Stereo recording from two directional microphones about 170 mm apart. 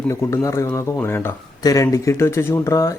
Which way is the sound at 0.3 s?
20° left (ahead or behind).